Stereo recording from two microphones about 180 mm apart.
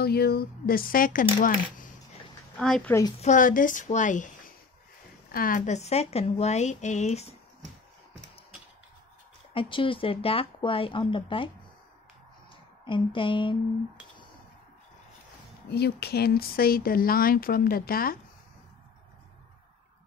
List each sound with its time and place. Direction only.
0.0 s speech: 60° left (ahead or behind)
2.5 s speech: 5° left (ahead or behind)
3.2 s a woman's voice: 45° left (ahead or behind)
5.3 s speech: 50° left (ahead or behind)
9.5 s a woman's voice: 30° left (ahead or behind)
12.8 s a woman's voice: 30° left (ahead or behind)
15.7 s speech: 65° left (ahead or behind)